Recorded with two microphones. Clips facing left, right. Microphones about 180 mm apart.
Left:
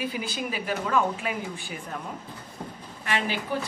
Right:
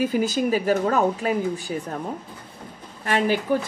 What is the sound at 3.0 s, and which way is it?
Speech, 45° right (ahead or behind).